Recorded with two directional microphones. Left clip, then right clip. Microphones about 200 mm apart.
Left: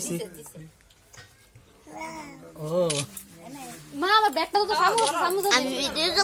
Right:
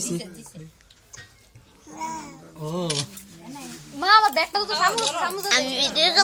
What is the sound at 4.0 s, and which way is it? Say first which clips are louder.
Speech: right 4 dB; 25° left (ahead or behind).